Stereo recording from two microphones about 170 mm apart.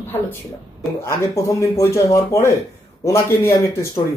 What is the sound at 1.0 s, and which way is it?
Speech, 20° left (ahead or behind).